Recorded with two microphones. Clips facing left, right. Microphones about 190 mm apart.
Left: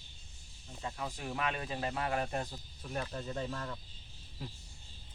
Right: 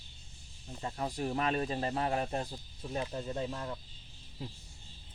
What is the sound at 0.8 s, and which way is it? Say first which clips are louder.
Speech: right 5 dB; 40° right (ahead or behind).